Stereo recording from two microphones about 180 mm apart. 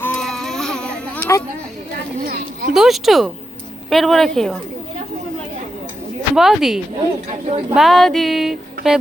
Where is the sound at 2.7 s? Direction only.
Centre (ahead or behind).